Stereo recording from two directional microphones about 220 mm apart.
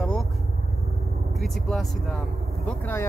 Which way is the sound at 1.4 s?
Centre (ahead or behind).